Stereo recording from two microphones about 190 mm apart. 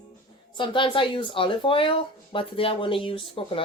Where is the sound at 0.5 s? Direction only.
25° left (ahead or behind).